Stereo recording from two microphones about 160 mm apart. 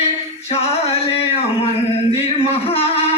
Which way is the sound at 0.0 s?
40° left (ahead or behind).